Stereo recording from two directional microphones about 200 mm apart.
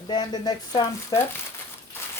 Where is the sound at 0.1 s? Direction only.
20° left (ahead or behind).